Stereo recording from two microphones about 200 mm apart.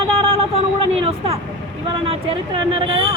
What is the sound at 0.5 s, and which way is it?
Speech, 30° right (ahead or behind).